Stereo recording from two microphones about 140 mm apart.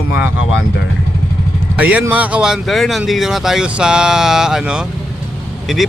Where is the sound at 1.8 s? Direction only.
10° right (ahead or behind).